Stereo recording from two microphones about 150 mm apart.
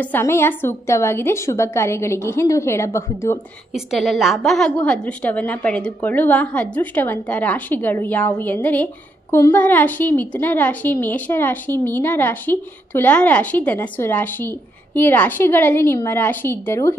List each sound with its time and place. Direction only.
0.0 s a woman's voice: 15° left (ahead or behind)
3.7 s a woman's voice: centre (ahead or behind); by 16.9 s 15° left (ahead or behind)